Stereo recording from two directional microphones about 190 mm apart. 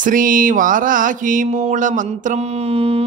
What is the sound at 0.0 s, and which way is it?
Mantra, 45° right (ahead or behind).